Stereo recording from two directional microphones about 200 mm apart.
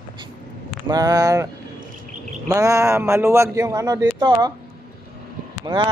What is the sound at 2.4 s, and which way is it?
Speech, 15° right (ahead or behind).